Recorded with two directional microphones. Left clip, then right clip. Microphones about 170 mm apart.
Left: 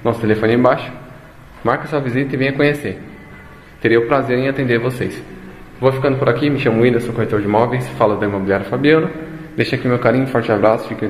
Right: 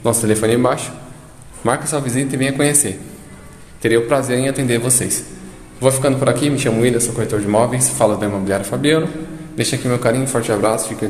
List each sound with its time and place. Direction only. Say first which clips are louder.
0.0 s a man's voice: even; 20° right (ahead or behind)